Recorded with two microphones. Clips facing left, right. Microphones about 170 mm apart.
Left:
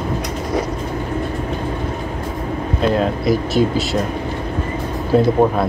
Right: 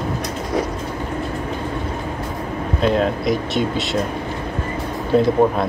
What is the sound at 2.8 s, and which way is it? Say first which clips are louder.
Speech: even; centre (ahead or behind).